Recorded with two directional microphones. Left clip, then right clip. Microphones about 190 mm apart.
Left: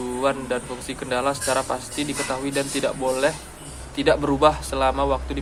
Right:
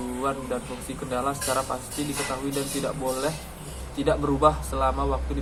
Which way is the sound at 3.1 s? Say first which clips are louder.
Left 6 dB; 20° left (ahead or behind).